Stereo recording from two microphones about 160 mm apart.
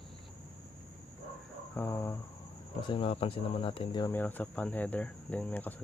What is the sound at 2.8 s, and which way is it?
Speech, 30° left (ahead or behind).